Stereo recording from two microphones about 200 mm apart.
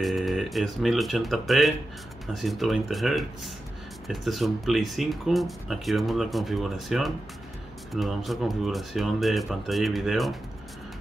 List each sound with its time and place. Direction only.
0.0 s speech: centre (ahead or behind)